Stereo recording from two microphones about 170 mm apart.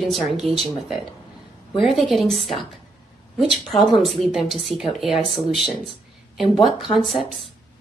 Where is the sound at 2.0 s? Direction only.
Centre (ahead or behind).